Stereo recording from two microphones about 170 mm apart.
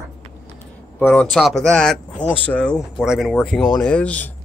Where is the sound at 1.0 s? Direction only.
10° left (ahead or behind).